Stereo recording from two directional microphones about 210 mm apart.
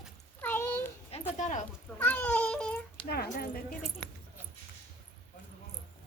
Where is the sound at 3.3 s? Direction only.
45° left (ahead or behind).